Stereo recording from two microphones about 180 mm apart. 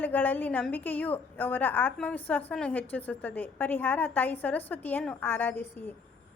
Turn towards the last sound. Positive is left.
turn(degrees=10)  # may be behind; listen again after turning